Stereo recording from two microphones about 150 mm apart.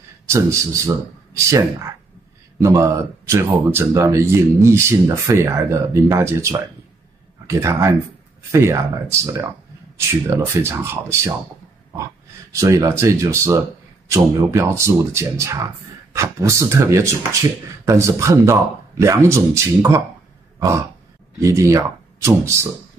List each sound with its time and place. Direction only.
0.3 s speech: 20° right (ahead or behind)
2.6 s speech: 20° right (ahead or behind)
12.5 s speech: 20° right (ahead or behind)
20.5 s grunt: 20° right (ahead or behind)
21.4 s speech: 20° right (ahead or behind)